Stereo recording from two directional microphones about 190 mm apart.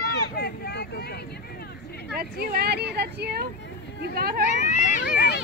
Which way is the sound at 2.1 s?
55° right (ahead or behind).